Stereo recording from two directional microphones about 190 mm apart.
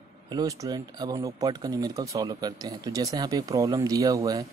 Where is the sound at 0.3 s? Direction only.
20° right (ahead or behind).